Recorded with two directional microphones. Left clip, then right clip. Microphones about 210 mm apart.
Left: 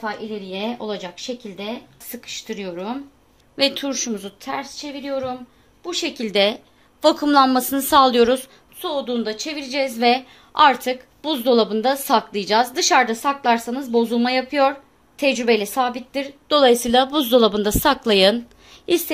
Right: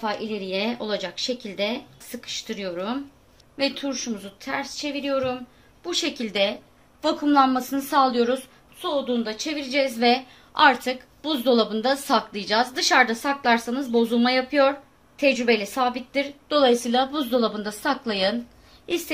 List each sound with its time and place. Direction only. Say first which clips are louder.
0.0 s speech: even; 5° left (ahead or behind)
2.0 s speech: left 2 dB; 25° left (ahead or behind)
3.5 s a woman's voice: left 5 dB; 50° left (ahead or behind)
4.7 s speech: right 1 dB; 10° left (ahead or behind)
5.9 s speech: left 1 dB; 20° left (ahead or behind)
6.1 s a woman's voice: left 5 dB; 35° left (ahead or behind)